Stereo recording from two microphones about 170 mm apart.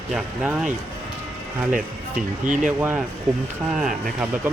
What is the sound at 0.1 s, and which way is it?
Speech, centre (ahead or behind).